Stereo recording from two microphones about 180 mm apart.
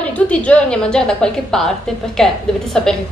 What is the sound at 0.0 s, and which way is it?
A woman's voice, 5° left (ahead or behind).